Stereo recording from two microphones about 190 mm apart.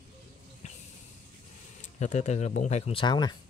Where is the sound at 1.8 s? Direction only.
40° left (ahead or behind); by 3.4 s 20° left (ahead or behind).